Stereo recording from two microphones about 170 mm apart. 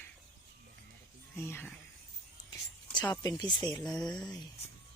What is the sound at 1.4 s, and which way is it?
Speech, 15° left (ahead or behind).